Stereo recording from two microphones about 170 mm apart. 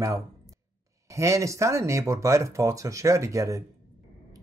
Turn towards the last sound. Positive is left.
turn(degrees=-20)  # may be behind; listen again after turning